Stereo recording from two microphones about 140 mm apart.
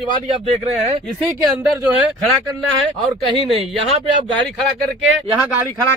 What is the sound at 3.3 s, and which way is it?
Speech, 40° right (ahead or behind).